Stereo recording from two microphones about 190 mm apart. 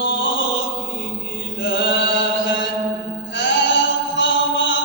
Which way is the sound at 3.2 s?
75° left (ahead or behind).